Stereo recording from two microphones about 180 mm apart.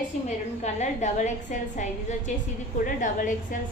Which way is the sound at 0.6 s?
40° left (ahead or behind).